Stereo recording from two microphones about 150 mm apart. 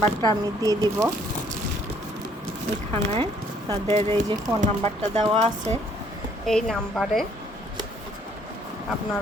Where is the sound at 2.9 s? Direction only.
45° right (ahead or behind).